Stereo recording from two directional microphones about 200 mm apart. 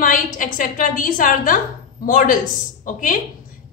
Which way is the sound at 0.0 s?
40° left (ahead or behind).